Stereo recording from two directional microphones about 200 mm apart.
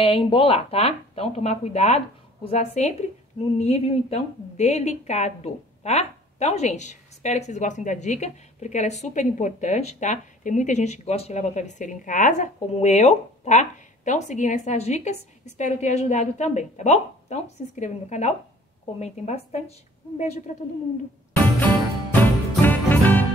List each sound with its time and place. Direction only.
0.0 s a woman's voice: 25° left (ahead or behind)
22.1 s music: 10° left (ahead or behind)